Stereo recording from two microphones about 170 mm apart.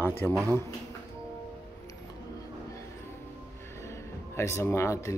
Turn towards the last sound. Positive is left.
turn(degrees=15)  # may be behind; listen again after turning